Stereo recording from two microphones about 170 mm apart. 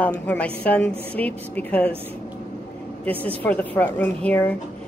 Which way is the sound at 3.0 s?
10° left (ahead or behind).